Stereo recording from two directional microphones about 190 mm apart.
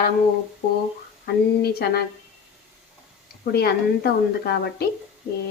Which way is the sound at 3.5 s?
55° left (ahead or behind).